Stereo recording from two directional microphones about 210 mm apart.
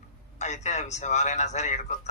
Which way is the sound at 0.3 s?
35° left (ahead or behind).